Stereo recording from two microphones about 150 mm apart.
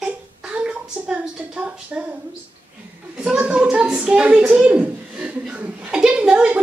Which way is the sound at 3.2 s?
5° right (ahead or behind).